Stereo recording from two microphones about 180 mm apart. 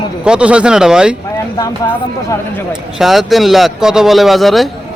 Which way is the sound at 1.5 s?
15° left (ahead or behind).